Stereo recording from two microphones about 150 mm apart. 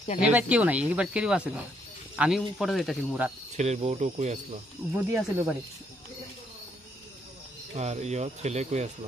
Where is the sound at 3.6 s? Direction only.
50° right (ahead or behind).